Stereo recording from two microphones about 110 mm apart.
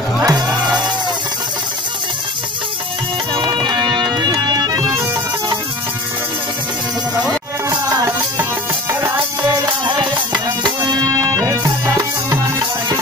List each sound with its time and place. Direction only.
0.2 s music: 35° right (ahead or behind)
3.4 s music: 40° right (ahead or behind)
7.7 s music: 40° right (ahead or behind)
9.8 s music: 45° right (ahead or behind)